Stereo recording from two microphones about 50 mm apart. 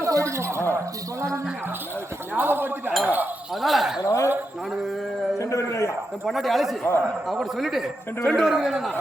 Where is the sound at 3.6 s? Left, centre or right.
Centre.